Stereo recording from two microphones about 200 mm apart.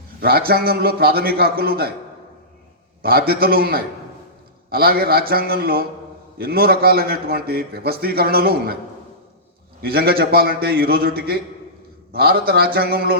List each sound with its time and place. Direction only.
0.2 s a man's voice: 50° right (ahead or behind)
3.0 s a man's voice: 50° right (ahead or behind)
9.8 s a man's voice: 50° right (ahead or behind)